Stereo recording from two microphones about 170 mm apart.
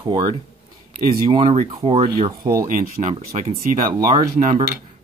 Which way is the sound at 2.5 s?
50° right (ahead or behind).